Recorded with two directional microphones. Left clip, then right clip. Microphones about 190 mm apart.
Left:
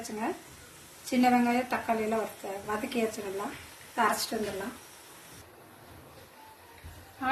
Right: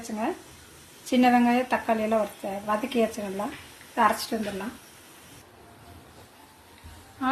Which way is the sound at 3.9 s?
50° right (ahead or behind).